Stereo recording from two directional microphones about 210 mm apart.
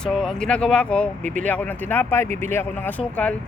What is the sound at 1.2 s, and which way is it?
Speech, 35° right (ahead or behind).